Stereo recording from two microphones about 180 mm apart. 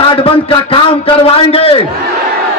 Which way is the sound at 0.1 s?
30° left (ahead or behind).